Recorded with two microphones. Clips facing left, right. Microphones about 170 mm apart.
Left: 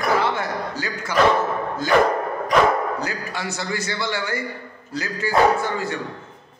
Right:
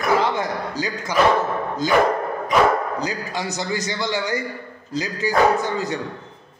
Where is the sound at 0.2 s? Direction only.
15° right (ahead or behind).